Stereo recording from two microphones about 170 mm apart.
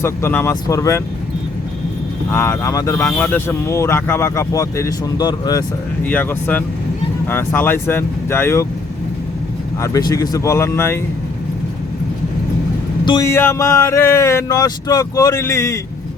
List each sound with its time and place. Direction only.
0.0 s speech: 15° left (ahead or behind)
2.3 s speech: 15° left (ahead or behind)
3.0 s speech: 10° left (ahead or behind)
6.1 s speech: 10° left (ahead or behind)
9.8 s speech: 20° left (ahead or behind)
13.2 s speech: 15° left (ahead or behind)